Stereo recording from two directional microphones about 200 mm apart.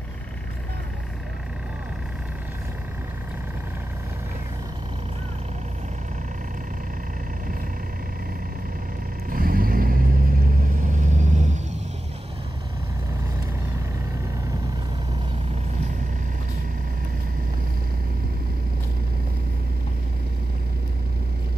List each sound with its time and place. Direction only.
9.3 s vehicle: 45° right (ahead or behind)